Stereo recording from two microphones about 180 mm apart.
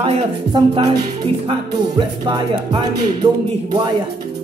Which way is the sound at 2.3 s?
25° right (ahead or behind).